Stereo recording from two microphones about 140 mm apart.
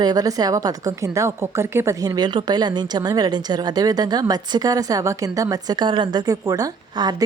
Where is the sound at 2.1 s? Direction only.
35° right (ahead or behind).